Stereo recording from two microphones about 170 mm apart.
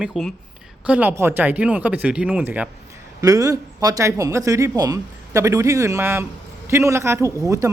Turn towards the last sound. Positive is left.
turn(degrees=-20)  # may be behind; listen again after turning